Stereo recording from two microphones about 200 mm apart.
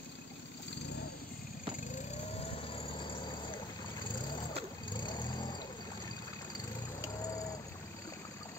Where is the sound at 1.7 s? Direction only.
35° left (ahead or behind).